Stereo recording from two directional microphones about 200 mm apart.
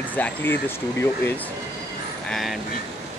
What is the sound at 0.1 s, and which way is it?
Speech, 10° left (ahead or behind).